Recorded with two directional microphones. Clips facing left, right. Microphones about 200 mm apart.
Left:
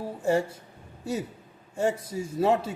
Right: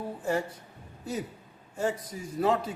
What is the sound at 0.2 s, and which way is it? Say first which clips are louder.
Speech: left 6 dB; 25° left (ahead or behind).